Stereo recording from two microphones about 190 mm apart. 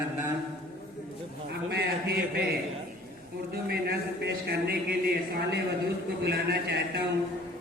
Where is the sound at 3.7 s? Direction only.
55° right (ahead or behind).